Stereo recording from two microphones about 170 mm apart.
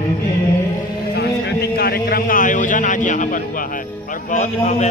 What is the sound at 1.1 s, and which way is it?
A man's voice, 65° left (ahead or behind).